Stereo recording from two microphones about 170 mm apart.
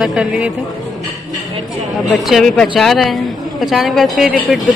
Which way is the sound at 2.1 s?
Centre (ahead or behind).